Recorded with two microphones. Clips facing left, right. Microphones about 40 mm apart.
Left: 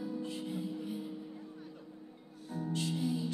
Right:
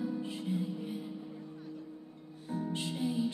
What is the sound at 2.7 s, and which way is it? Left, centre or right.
Music, centre.